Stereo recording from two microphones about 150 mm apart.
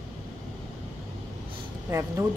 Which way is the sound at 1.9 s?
20° right (ahead or behind).